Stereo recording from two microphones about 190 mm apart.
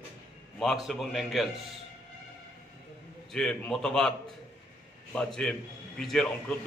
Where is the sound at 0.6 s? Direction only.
Centre (ahead or behind).